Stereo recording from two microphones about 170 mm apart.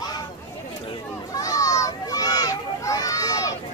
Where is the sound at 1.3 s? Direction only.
20° left (ahead or behind).